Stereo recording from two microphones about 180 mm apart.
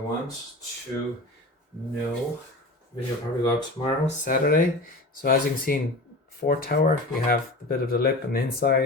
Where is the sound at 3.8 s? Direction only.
30° left (ahead or behind).